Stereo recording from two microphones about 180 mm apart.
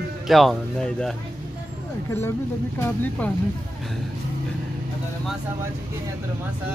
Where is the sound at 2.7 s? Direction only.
10° left (ahead or behind).